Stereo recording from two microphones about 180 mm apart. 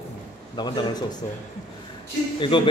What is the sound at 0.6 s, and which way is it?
Speech, 25° left (ahead or behind).